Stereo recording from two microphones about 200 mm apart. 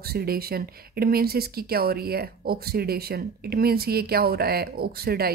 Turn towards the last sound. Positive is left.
turn(degrees=-50)  # may be behind; listen again after turning